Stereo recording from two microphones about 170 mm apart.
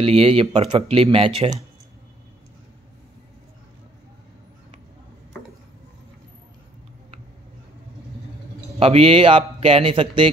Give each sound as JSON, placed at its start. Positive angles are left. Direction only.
{"t": 0.0, "sound": "a man's voice", "side_deg": -35}
{"t": 8.7, "sound": "a man's voice", "side_deg": -35}